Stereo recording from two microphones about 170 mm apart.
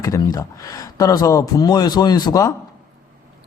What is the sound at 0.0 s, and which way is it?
Speech, 20° left (ahead or behind).